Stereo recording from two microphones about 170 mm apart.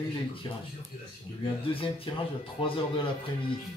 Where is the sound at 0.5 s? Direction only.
30° left (ahead or behind).